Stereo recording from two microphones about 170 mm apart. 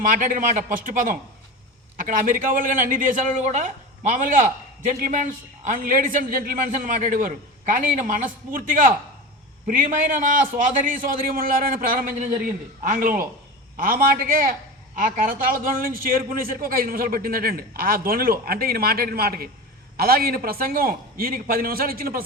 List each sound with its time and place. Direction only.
0.0 s a man's voice: 50° right (ahead or behind)